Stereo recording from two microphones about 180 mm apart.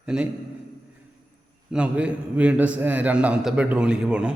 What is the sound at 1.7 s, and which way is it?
A man's voice, 5° right (ahead or behind).